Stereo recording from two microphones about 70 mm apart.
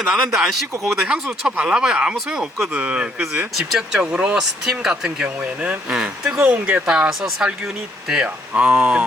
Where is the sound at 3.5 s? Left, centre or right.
Centre; by 6.8 s right.